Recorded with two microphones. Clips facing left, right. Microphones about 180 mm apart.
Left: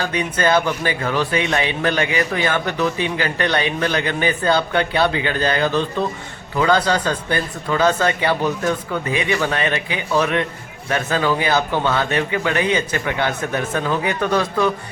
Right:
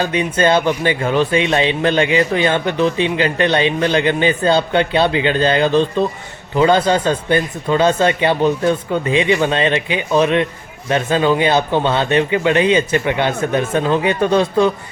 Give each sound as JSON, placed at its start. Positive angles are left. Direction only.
{"t": 0.0, "sound": "a man's voice", "side_deg": -20}